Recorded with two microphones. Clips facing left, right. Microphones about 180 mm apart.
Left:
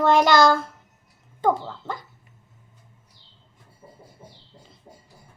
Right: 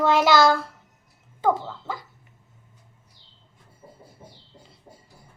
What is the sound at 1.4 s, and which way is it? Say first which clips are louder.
Dog: left 1 dB; 5° right (ahead or behind).